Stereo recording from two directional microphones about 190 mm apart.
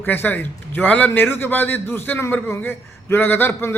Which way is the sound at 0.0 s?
10° left (ahead or behind).